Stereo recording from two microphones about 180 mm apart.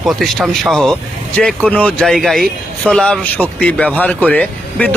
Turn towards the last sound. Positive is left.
turn(degrees=10)  # may be behind; listen again after turning